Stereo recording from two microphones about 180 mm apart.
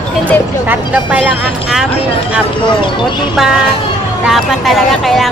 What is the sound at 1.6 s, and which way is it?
Speech, 5° right (ahead or behind).